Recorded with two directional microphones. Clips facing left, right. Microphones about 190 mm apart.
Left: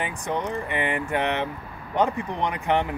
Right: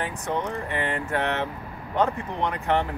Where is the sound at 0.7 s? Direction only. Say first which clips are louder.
Left 1 dB; 15° left (ahead or behind).